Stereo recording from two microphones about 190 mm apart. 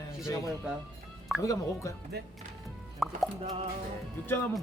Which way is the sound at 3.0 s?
Centre (ahead or behind).